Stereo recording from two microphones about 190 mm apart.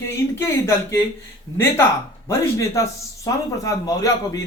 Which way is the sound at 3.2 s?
15° left (ahead or behind).